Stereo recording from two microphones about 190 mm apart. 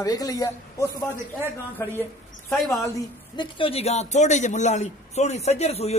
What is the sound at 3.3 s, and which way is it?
A man's voice, 30° left (ahead or behind).